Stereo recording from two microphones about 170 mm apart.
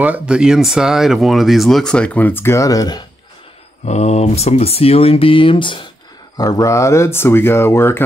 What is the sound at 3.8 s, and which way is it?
Speech, 40° left (ahead or behind).